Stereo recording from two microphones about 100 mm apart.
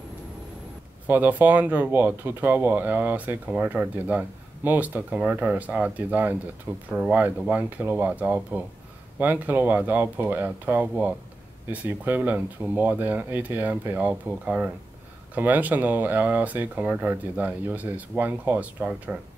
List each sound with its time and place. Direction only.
1.0 s speech: 20° right (ahead or behind)